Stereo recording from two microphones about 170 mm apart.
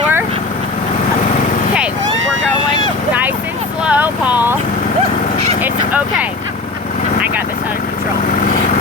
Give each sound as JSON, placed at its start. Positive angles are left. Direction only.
{"t": 3.8, "sound": "vehicle", "side_deg": -10}
{"t": 5.6, "sound": "vehicle", "side_deg": -10}